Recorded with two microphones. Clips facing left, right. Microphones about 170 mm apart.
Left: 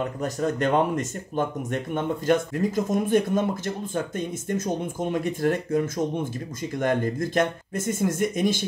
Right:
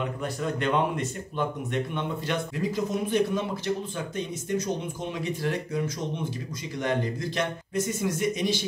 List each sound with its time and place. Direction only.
0.2 s speech: 45° left (ahead or behind)